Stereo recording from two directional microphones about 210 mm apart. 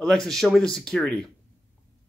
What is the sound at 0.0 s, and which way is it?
Speech, 5° left (ahead or behind).